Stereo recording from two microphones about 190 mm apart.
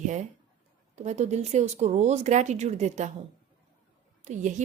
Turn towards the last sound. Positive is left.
turn(degrees=-40)  # may be behind; listen again after turning